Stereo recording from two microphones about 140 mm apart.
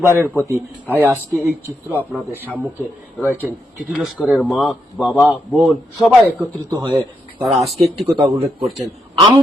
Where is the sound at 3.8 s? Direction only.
5° right (ahead or behind).